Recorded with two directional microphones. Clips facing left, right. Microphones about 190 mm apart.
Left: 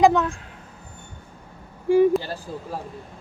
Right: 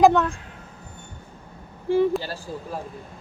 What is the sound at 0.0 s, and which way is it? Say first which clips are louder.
Speech: right 1 dB; centre (ahead or behind).